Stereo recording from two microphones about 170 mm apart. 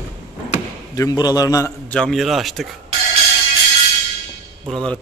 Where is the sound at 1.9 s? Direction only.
5° left (ahead or behind).